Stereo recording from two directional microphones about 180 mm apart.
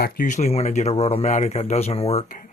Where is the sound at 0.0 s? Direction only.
45° left (ahead or behind).